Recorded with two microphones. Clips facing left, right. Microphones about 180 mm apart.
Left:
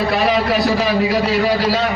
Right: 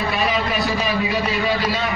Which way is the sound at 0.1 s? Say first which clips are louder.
Left 6 dB; 70° left (ahead or behind).